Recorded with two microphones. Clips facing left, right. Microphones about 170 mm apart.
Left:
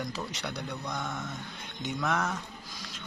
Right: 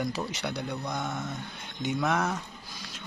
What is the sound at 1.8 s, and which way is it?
Speech, 5° right (ahead or behind).